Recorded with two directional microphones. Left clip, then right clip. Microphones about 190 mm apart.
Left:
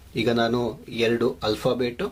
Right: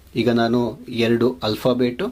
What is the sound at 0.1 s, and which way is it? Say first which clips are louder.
Speech: right 3 dB; 25° right (ahead or behind).